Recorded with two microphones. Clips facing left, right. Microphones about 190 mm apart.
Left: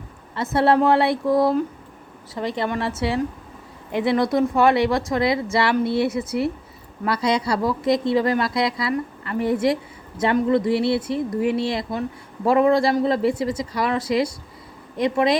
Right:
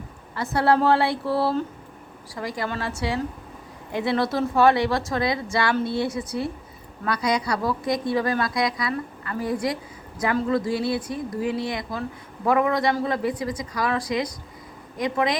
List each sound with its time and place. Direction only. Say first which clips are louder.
0.5 s a woman's voice: left 2 dB; 25° left (ahead or behind)
0.9 s a sound: left 3 dB; 20° left (ahead or behind)
2.3 s a woman's voice: left 5 dB; 25° left (ahead or behind)
3.9 s a woman's voice: left 4 dB; 20° left (ahead or behind)